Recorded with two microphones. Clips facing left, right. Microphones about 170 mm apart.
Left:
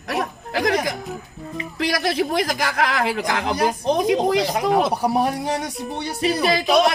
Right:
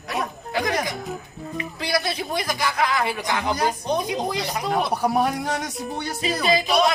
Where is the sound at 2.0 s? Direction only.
80° left.